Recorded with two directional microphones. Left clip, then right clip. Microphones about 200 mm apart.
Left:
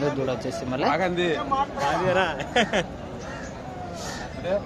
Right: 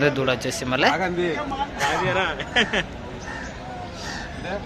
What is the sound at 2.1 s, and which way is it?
Speech, 60° left (ahead or behind).